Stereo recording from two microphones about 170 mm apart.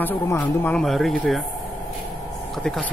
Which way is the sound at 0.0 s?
10° left (ahead or behind).